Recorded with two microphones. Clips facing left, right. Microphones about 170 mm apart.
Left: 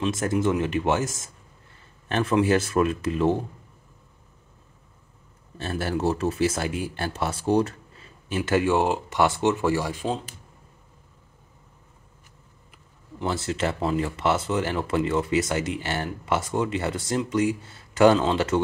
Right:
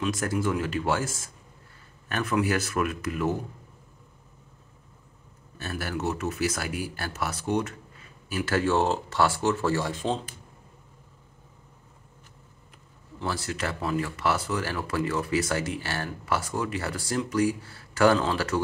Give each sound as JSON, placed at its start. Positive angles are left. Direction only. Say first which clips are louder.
{"t": 0.0, "sound": "speech", "louder": "left 4 dB", "side_deg": 25}
{"t": 5.6, "sound": "speech", "louder": "left 5 dB", "side_deg": 30}
{"t": 13.2, "sound": "speech", "louder": "left 5 dB", "side_deg": 25}